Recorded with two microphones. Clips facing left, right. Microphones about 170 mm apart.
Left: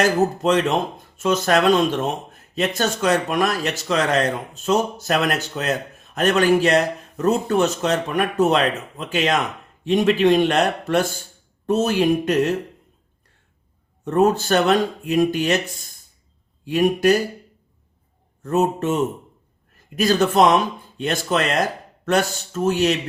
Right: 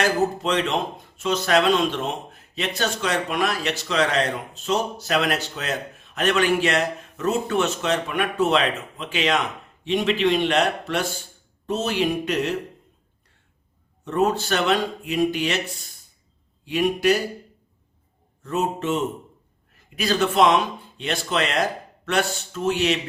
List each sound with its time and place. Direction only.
0.0 s speech: 45° left (ahead or behind)
14.0 s speech: 45° left (ahead or behind)
18.4 s speech: 45° left (ahead or behind)
20.0 s a man's voice: 45° left (ahead or behind)